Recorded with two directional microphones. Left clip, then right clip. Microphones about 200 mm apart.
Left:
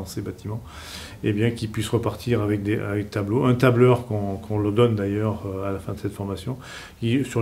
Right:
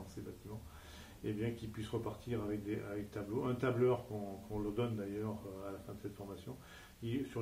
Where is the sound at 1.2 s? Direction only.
30° left (ahead or behind).